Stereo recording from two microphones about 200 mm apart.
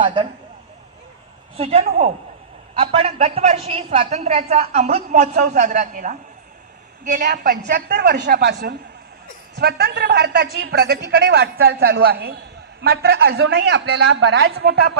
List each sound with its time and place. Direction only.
1.6 s a man's voice: 30° right (ahead or behind)
7.2 s a man's voice: 50° right (ahead or behind)